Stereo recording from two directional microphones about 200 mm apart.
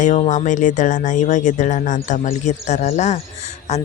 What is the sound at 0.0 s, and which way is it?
Speech, 35° left (ahead or behind).